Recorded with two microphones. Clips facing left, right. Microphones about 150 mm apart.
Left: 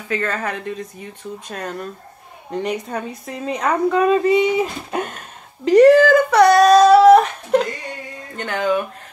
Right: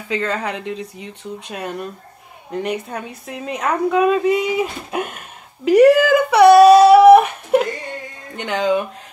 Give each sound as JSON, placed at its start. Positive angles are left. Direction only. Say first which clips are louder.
{"t": 0.1, "sound": "a woman's voice", "louder": "right 1 dB", "side_deg": -15}
{"t": 5.7, "sound": "a sound", "louder": "left 1 dB", "side_deg": -10}
{"t": 8.4, "sound": "speech", "louder": "right 1 dB", "side_deg": -15}